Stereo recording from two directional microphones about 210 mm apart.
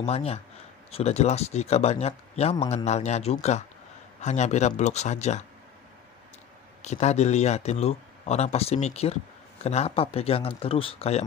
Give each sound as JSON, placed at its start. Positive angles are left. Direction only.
{"t": 0.0, "sound": "speech", "side_deg": 30}
{"t": 6.8, "sound": "speech", "side_deg": 35}